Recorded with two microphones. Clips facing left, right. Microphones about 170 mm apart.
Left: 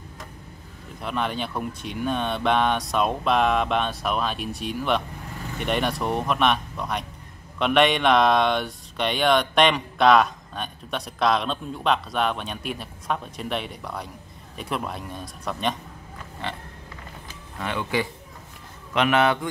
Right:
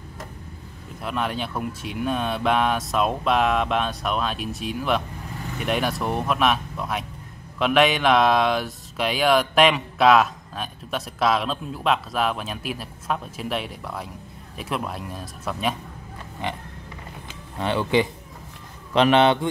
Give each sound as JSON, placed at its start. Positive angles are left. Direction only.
{"t": 1.0, "sound": "speech", "side_deg": 0}
{"t": 16.4, "sound": "a sound", "side_deg": -15}
{"t": 17.6, "sound": "a man's voice", "side_deg": -30}